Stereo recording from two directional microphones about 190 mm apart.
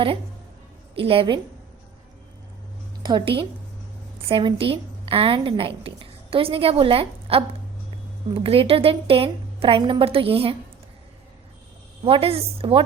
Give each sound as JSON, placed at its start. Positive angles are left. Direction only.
{"t": 0.9, "sound": "a woman's voice", "side_deg": -30}
{"t": 3.0, "sound": "a woman's voice", "side_deg": -25}
{"t": 12.0, "sound": "a woman's voice", "side_deg": -30}